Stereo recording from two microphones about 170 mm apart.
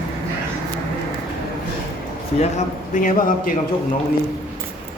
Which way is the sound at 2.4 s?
45° left (ahead or behind).